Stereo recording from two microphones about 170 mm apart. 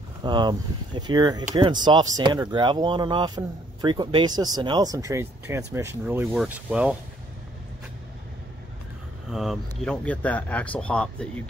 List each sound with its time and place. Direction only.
0.2 s speech: 25° right (ahead or behind); by 7.0 s 10° right (ahead or behind)
9.3 s speech: centre (ahead or behind)